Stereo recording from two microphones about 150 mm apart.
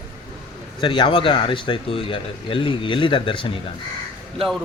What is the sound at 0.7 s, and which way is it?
Speech, 30° left (ahead or behind).